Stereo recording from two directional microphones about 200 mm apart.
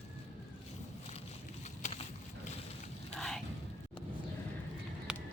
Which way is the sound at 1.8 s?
30° left (ahead or behind).